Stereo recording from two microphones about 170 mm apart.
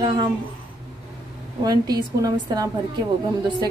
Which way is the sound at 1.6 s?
25° right (ahead or behind).